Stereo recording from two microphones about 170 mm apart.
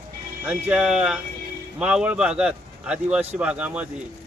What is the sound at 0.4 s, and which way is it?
A man's voice, 5° right (ahead or behind).